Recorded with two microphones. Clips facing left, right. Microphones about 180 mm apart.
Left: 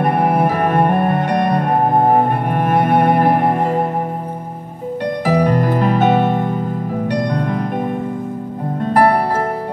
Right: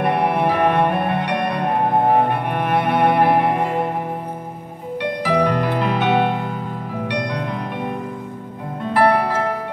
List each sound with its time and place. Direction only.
0.0 s music: 45° left (ahead or behind)
5.0 s music: 45° left (ahead or behind)
8.9 s music: 45° left (ahead or behind)